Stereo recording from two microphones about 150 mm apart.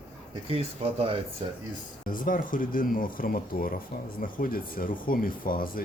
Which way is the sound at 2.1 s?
65° left (ahead or behind).